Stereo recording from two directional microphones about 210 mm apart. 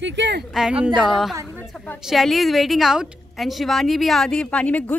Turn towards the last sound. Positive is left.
turn(degrees=5)  # may be behind; listen again after turning